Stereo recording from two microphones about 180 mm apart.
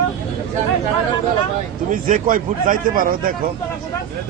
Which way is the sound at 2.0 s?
50° right (ahead or behind).